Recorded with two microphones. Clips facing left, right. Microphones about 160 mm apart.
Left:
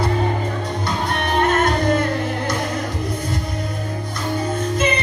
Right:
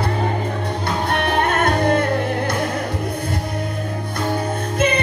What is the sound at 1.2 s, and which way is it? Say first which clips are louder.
Music: left 2 dB; 60° right (ahead or behind).